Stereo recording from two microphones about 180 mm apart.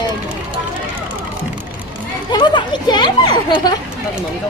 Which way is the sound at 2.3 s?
25° left (ahead or behind).